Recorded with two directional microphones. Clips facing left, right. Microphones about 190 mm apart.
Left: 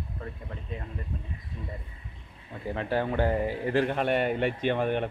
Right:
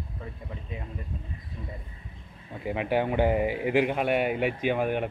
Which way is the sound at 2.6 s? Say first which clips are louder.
Right 2 dB; 15° right (ahead or behind).